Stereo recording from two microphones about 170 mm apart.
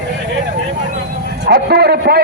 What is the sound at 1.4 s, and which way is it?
Speech, 65° right (ahead or behind).